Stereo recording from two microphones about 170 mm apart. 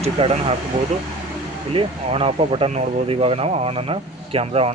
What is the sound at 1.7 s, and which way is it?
Speech, 35° right (ahead or behind).